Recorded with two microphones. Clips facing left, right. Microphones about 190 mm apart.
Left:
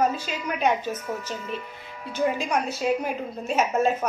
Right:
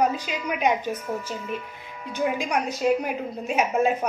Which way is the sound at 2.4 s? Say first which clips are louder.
Even; 15° right (ahead or behind).